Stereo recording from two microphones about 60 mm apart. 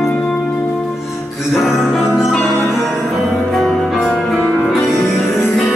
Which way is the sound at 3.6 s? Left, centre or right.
Centre.